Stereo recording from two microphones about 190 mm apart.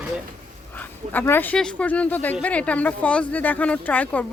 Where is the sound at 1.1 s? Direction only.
10° left (ahead or behind).